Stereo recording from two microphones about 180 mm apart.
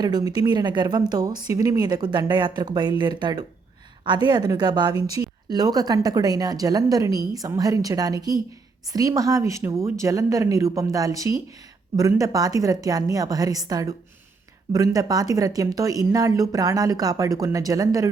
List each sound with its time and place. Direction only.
0.0 s speech: 20° right (ahead or behind)